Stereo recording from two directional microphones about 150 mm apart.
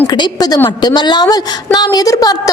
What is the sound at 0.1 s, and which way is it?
A woman's voice, 25° left (ahead or behind).